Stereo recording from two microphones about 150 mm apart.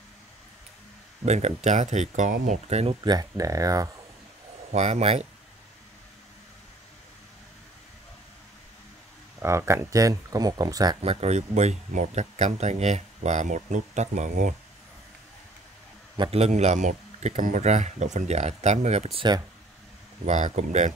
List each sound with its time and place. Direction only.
1.2 s speech: 45° right (ahead or behind)
3.0 s speech: 25° right (ahead or behind)
4.7 s speech: 45° right (ahead or behind)
9.4 s speech: 20° right (ahead or behind)
11.0 s speech: 45° right (ahead or behind)
16.2 s speech: 40° right (ahead or behind)
20.2 s speech: 50° right (ahead or behind)